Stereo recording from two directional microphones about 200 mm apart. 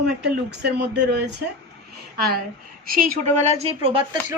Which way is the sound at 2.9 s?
45° right (ahead or behind).